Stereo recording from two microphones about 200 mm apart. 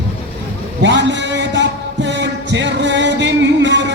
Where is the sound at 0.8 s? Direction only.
60° right (ahead or behind).